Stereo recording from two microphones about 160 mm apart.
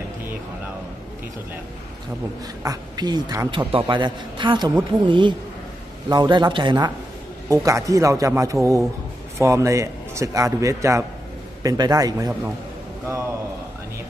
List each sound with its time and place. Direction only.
2.6 s a man's voice: 25° right (ahead or behind)